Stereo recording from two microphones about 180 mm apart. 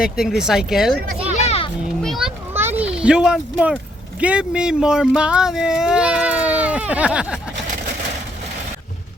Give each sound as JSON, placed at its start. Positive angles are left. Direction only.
{"t": 0.0, "sound": "speech", "side_deg": -5}
{"t": 1.5, "sound": "children playing", "side_deg": 30}
{"t": 2.0, "sound": "children playing", "side_deg": 0}
{"t": 2.5, "sound": "a sound", "side_deg": -10}
{"t": 4.2, "sound": "speech", "side_deg": -5}